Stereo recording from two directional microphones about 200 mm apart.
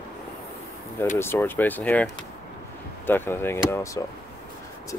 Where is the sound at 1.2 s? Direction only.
10° left (ahead or behind).